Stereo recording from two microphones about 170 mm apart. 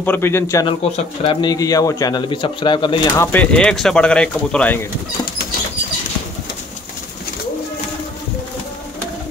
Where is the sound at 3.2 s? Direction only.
10° left (ahead or behind).